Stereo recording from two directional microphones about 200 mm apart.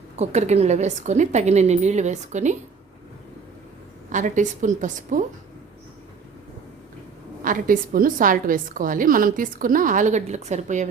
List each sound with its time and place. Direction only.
0.2 s a woman's voice: 35° right (ahead or behind)
4.1 s a woman's voice: 40° right (ahead or behind)
7.4 s a woman's voice: 45° right (ahead or behind)